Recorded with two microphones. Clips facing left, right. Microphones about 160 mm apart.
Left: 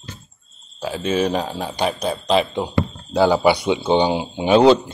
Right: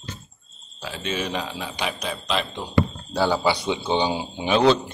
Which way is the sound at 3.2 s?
15° left (ahead or behind).